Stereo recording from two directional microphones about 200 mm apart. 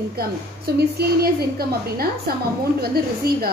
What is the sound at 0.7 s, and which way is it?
Speech, 55° right (ahead or behind).